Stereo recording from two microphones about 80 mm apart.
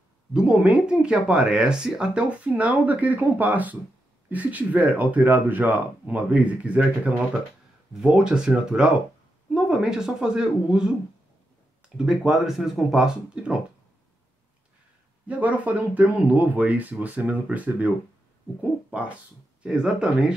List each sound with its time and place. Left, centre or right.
0.3 s speech: centre
11.8 s a sound: centre
12.3 s speech: centre
15.2 s speech: centre